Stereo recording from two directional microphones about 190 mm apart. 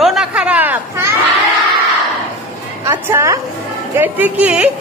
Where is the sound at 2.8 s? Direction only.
15° right (ahead or behind).